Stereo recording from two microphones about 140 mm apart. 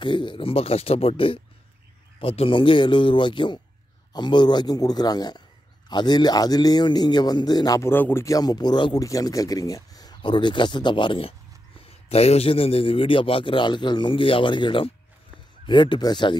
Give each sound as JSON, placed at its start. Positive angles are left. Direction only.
{"t": 0.0, "sound": "a man's voice", "side_deg": 35}
{"t": 7.9, "sound": "a man's voice", "side_deg": 15}